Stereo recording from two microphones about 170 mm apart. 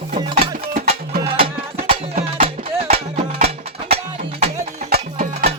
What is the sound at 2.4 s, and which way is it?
Music, 35° right (ahead or behind).